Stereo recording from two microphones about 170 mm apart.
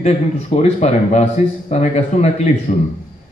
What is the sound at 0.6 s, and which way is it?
A man's voice, 40° left (ahead or behind).